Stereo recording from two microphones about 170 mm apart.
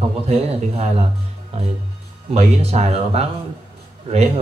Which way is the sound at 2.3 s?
40° right (ahead or behind).